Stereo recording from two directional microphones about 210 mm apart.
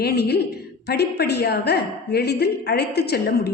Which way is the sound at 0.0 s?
50° left (ahead or behind).